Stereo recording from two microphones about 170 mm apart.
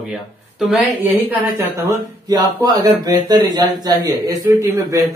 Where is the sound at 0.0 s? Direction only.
Centre (ahead or behind).